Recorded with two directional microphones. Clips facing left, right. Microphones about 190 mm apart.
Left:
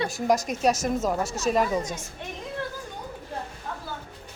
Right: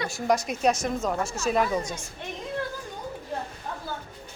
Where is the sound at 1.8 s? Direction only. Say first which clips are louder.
Left 1 dB; 20° left (ahead or behind).